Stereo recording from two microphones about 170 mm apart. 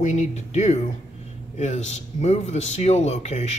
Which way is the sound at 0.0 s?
45° left (ahead or behind).